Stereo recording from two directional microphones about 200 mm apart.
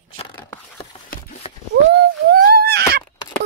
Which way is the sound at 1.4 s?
30° left (ahead or behind).